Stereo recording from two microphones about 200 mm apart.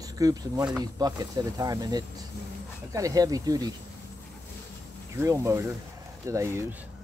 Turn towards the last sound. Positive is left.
turn(degrees=-15)  # may be behind; listen again after turning